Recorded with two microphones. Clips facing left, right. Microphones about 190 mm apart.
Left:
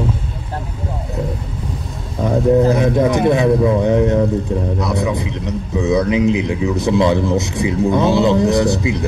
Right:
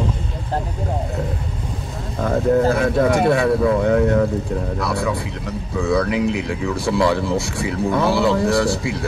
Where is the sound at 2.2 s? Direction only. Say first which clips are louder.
Left 3 dB; 20° left (ahead or behind).